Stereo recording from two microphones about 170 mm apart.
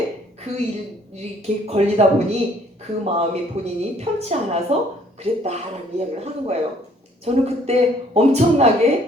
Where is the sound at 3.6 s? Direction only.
40° right (ahead or behind).